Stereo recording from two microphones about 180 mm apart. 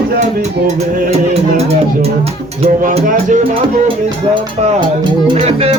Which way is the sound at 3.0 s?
45° right (ahead or behind).